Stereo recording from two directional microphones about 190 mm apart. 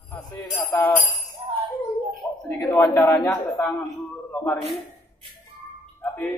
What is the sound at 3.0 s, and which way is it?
A man's voice, 5° left (ahead or behind).